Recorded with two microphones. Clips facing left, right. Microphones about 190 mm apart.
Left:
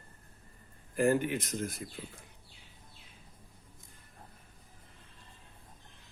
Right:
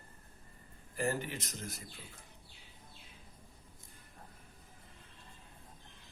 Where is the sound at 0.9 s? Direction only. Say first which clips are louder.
Left 8 dB; 55° left (ahead or behind).